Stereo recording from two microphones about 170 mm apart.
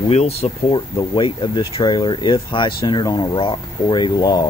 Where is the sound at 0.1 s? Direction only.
40° left (ahead or behind).